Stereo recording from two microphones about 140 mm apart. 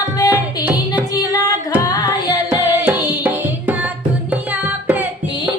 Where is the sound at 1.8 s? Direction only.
25° left (ahead or behind).